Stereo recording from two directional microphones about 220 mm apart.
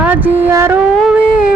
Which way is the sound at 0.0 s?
10° right (ahead or behind).